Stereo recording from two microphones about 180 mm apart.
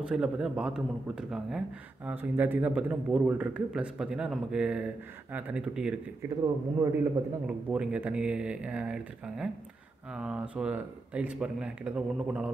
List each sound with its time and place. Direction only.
0.0 s a man's voice: 5° right (ahead or behind)
6.4 s a man's voice: 15° right (ahead or behind)